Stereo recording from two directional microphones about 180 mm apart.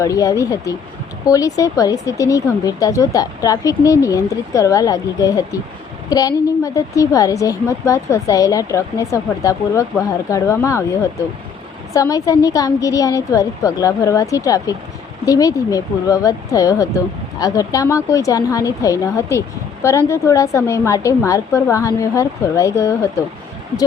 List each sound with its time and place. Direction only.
0.0 s a woman's voice: 20° left (ahead or behind)